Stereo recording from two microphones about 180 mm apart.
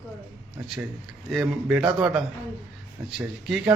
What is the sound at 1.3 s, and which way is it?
Speech, 5° right (ahead or behind).